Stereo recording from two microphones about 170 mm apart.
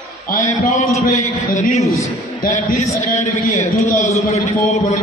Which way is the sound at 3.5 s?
45° left (ahead or behind).